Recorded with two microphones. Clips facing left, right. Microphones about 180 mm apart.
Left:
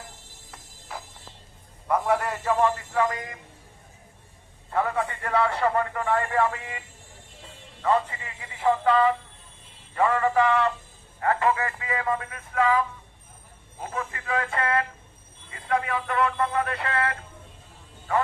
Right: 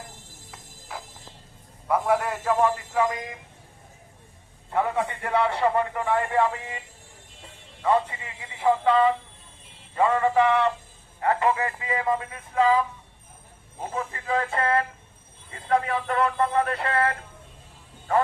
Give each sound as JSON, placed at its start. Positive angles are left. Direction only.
{"t": 0.5, "sound": "music", "side_deg": 0}
{"t": 1.9, "sound": "a sound", "side_deg": 0}
{"t": 2.9, "sound": "a man's voice", "side_deg": -15}
{"t": 4.7, "sound": "a man's voice", "side_deg": -15}
{"t": 14.1, "sound": "speech", "side_deg": -25}